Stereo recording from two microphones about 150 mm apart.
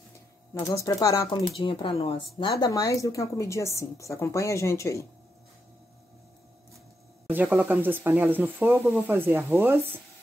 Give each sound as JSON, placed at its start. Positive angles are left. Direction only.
{"t": 0.7, "sound": "a woman's voice", "side_deg": 20}
{"t": 1.6, "sound": "speech", "side_deg": 35}
{"t": 2.6, "sound": "a woman's voice", "side_deg": 25}
{"t": 7.2, "sound": "speech", "side_deg": -10}